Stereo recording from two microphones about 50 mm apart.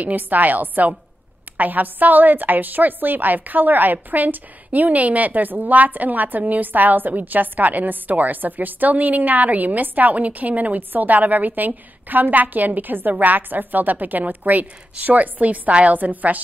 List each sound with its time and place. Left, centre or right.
0.0 s a woman's voice: right